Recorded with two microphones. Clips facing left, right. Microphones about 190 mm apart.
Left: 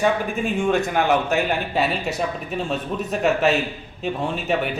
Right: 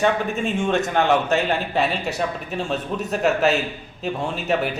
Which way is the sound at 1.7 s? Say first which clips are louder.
Even; centre (ahead or behind).